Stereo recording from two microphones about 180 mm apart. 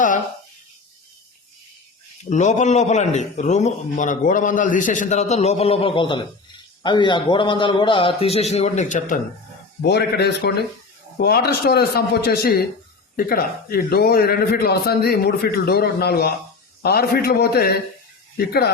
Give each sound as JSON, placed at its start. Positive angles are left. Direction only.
{"t": 2.3, "sound": "a man's voice", "side_deg": 40}
{"t": 9.8, "sound": "a man's voice", "side_deg": 65}